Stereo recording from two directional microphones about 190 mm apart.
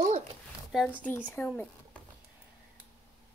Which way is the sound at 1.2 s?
10° left (ahead or behind).